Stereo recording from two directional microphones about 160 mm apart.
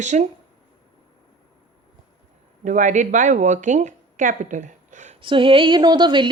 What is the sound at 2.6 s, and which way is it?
Speech, 50° right (ahead or behind).